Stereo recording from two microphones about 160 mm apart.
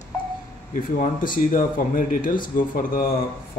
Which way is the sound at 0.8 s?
60° left (ahead or behind).